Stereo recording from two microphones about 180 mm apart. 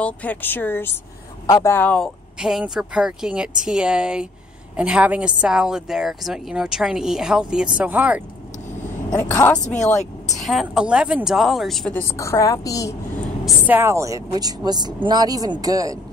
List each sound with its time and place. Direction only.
0.0 s a woman's voice: 10° left (ahead or behind); by 8.2 s 5° right (ahead or behind)
9.2 s speech: 15° left (ahead or behind)
10.3 s a woman's voice: centre (ahead or behind)
12.0 s a woman's voice: 15° left (ahead or behind)
13.7 s speech: 15° right (ahead or behind)